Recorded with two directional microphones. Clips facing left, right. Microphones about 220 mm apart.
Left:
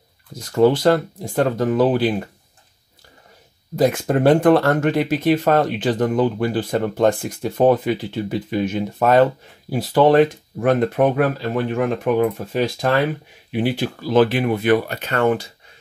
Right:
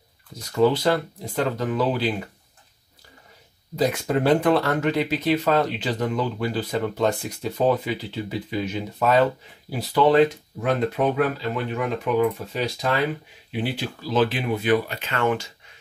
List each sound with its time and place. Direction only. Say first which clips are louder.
0.4 s speech: left 4 dB; 50° left (ahead or behind)
3.7 s speech: left 5 dB; 50° left (ahead or behind)